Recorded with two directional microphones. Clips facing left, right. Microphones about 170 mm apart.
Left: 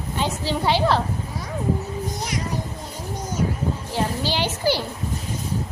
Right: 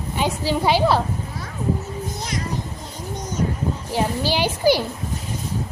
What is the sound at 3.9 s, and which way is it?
Speech, 10° right (ahead or behind).